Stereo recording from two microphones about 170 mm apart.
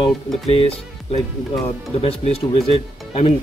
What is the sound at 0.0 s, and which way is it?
Speech, 35° left (ahead or behind).